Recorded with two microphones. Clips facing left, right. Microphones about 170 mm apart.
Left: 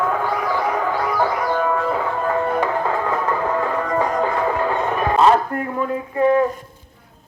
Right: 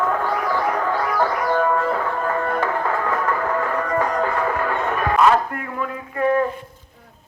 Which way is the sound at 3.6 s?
15° left (ahead or behind).